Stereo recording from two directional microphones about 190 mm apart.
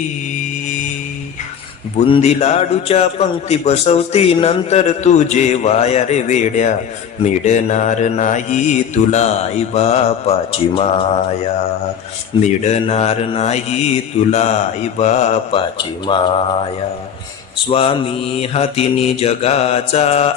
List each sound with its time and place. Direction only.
2.0 s a man's voice: 35° left (ahead or behind)
12.4 s a man's voice: 35° left (ahead or behind)
16.0 s mantra: 25° left (ahead or behind)
17.7 s a man's voice: 30° left (ahead or behind)